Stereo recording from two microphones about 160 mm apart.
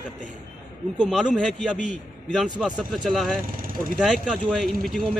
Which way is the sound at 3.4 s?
60° right (ahead or behind).